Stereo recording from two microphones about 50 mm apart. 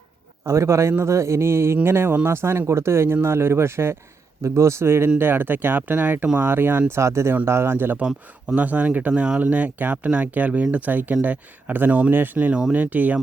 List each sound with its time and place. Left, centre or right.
0.4 s speech: right
4.4 s speech: right
5.0 s speech: right
6.9 s speech: right
7.4 s speech: right
8.5 s speech: right
12.1 s speech: right